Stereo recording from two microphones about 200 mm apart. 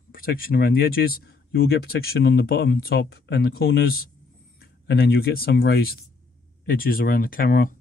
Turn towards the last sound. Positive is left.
turn(degrees=45)  # may be behind; listen again after turning